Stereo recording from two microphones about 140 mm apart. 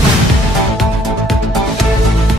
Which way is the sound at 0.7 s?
Centre (ahead or behind).